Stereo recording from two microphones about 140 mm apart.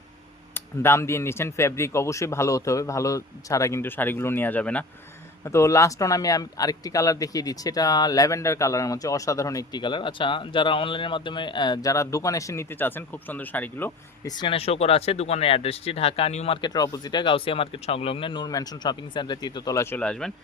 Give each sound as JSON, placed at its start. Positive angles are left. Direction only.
{"t": 0.5, "sound": "speech", "side_deg": 20}
{"t": 5.5, "sound": "speech", "side_deg": 20}
{"t": 14.3, "sound": "speech", "side_deg": 35}
{"t": 16.6, "sound": "speech", "side_deg": 30}
{"t": 20.0, "sound": "speech", "side_deg": 5}